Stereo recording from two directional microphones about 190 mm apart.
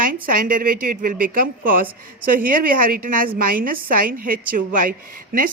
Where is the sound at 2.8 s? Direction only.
50° right (ahead or behind).